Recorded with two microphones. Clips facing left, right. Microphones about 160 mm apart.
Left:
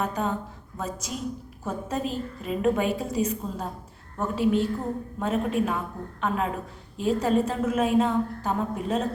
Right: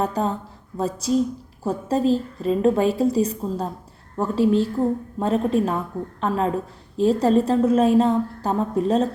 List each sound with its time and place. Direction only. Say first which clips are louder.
0.0 s a woman's voice: right 4 dB; 35° right (ahead or behind)